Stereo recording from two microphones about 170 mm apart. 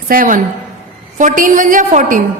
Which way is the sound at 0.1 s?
55° right (ahead or behind).